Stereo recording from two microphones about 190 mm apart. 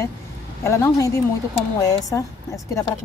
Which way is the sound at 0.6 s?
15° left (ahead or behind).